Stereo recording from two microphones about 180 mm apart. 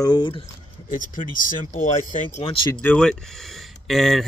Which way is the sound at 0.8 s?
45° left (ahead or behind).